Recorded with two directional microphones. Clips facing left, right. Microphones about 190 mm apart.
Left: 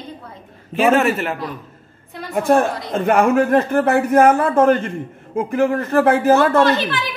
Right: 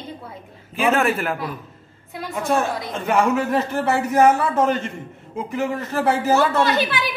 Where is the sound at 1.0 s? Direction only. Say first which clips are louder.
Left 3 dB; centre (ahead or behind).